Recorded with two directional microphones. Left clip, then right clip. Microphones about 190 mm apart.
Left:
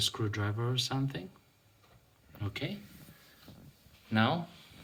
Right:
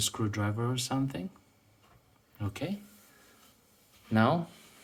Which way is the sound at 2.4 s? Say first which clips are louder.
Right 2 dB; 50° right (ahead or behind).